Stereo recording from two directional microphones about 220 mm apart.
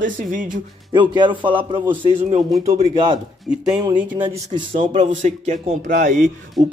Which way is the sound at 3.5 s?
5° right (ahead or behind).